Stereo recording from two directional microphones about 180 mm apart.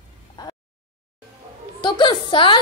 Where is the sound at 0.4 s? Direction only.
20° left (ahead or behind).